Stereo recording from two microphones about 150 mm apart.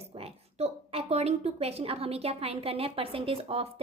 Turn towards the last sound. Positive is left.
turn(degrees=-40)  # may be behind; listen again after turning